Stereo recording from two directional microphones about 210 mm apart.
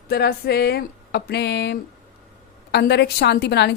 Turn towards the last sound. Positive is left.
turn(degrees=50)  # may be behind; listen again after turning